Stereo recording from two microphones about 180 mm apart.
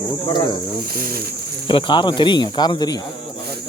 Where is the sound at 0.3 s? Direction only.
25° left (ahead or behind).